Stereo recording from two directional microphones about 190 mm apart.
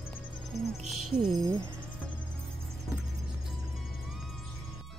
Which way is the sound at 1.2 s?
20° right (ahead or behind).